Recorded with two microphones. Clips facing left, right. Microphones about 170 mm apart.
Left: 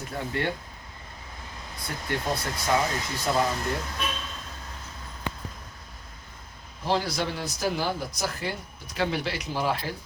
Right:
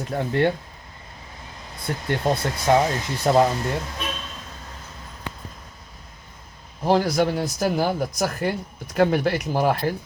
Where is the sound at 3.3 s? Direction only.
45° right (ahead or behind).